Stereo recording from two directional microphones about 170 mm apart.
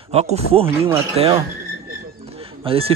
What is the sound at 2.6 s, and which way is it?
Speech, 35° right (ahead or behind).